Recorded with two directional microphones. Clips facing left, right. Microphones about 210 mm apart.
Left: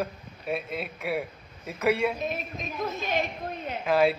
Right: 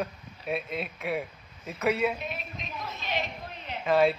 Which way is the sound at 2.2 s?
45° left (ahead or behind).